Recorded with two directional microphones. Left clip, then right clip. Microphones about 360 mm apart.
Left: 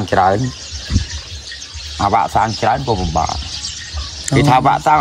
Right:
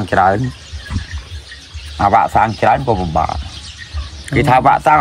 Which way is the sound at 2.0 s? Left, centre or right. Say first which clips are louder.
Right 3 dB; centre.